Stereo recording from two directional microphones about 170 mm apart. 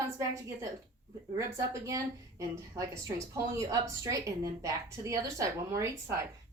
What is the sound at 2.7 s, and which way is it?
A woman's voice, 20° right (ahead or behind).